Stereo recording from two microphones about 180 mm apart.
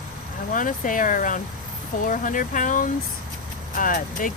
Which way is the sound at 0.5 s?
50° left (ahead or behind).